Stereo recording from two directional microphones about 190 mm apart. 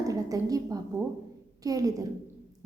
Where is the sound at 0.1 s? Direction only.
20° right (ahead or behind).